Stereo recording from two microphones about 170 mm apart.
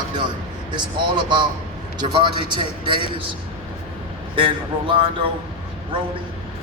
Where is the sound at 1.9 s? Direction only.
25° right (ahead or behind).